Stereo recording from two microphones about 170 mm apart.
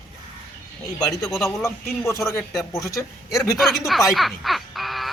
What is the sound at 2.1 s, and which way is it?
Speech, 15° left (ahead or behind).